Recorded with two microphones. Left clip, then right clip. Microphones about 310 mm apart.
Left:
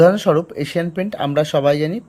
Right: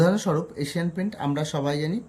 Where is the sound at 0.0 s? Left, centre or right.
Centre.